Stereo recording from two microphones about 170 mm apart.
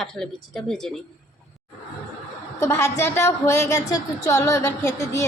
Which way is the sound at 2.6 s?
15° left (ahead or behind).